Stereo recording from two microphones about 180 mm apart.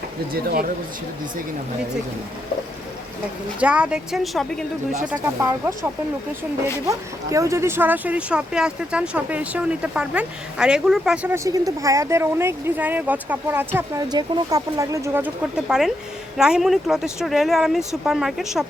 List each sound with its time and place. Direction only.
3.6 s speech: 5° right (ahead or behind)
5.4 s speech: 15° right (ahead or behind)
11.4 s speech: 20° right (ahead or behind); by 18.6 s centre (ahead or behind)